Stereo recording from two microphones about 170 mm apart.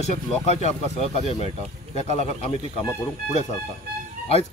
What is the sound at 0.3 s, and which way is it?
A man's voice, 40° left (ahead or behind).